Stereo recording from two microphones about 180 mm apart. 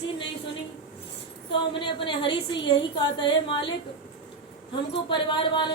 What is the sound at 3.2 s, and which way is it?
Speech, 25° left (ahead or behind).